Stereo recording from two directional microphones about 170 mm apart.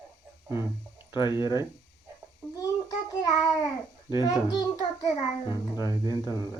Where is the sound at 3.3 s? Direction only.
25° left (ahead or behind).